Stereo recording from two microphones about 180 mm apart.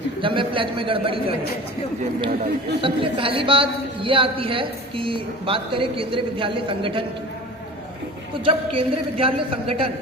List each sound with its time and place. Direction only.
0.2 s a woman's voice: 30° right (ahead or behind)
2.8 s a woman's voice: 30° right (ahead or behind)
8.4 s a woman's voice: 30° right (ahead or behind)